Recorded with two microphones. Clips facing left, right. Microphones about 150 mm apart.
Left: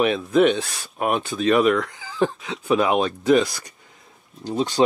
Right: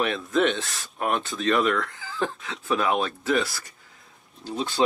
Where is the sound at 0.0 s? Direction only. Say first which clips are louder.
Left 6 dB; 15° left (ahead or behind).